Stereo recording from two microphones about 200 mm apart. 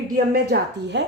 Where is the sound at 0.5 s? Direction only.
60° right (ahead or behind).